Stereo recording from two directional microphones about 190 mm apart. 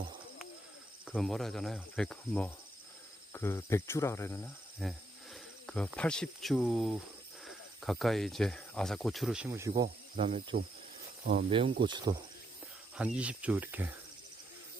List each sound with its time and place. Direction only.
1.1 s cricket: centre (ahead or behind)
4.8 s wild animals: centre (ahead or behind)
6.0 s cricket: 5° left (ahead or behind)
7.4 s speech: centre (ahead or behind); by 9.8 s 15° right (ahead or behind)
10.2 s speech: 30° right (ahead or behind)
13.0 s speech: 5° right (ahead or behind)